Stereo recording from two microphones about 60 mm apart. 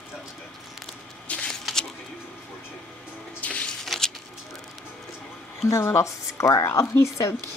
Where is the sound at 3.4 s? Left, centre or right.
Left.